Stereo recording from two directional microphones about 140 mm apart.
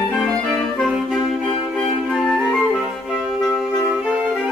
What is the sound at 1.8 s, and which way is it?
Music, centre (ahead or behind).